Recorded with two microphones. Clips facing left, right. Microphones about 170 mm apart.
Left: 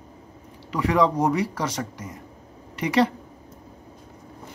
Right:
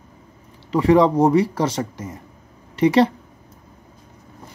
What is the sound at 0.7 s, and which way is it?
Speech, 30° right (ahead or behind).